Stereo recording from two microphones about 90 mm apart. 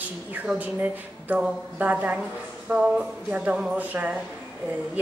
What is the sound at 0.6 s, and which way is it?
Speech, 20° right (ahead or behind).